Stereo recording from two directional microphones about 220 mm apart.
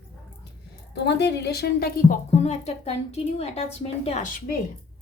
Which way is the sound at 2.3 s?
30° left (ahead or behind).